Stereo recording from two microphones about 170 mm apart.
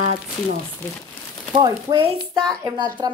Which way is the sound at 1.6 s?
25° right (ahead or behind).